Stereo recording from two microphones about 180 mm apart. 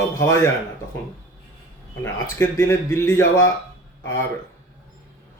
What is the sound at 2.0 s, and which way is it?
A man's voice, 15° left (ahead or behind).